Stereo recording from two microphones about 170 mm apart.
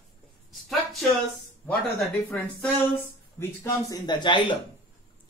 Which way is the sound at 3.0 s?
15° left (ahead or behind).